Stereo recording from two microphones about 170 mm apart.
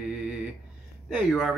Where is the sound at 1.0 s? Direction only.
Centre (ahead or behind).